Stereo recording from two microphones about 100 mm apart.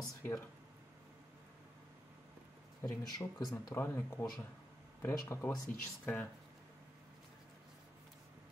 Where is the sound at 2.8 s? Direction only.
40° left (ahead or behind).